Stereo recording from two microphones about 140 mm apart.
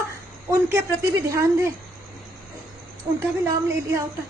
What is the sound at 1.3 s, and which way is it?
Speech, 20° right (ahead or behind).